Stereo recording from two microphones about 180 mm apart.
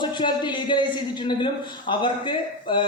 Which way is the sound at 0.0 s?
25° left (ahead or behind).